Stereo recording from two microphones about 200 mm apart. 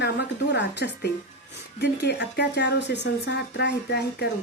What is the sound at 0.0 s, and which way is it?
Speech, 60° left (ahead or behind).